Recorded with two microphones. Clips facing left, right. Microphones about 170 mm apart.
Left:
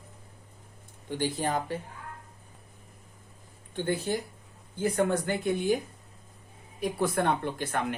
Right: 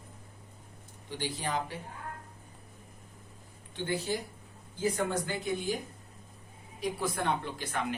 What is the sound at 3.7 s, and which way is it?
Speech, 50° left (ahead or behind).